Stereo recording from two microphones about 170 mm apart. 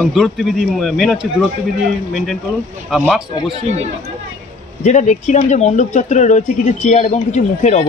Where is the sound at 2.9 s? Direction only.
Centre (ahead or behind).